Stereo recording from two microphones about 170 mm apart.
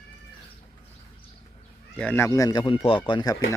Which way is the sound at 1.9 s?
10° left (ahead or behind).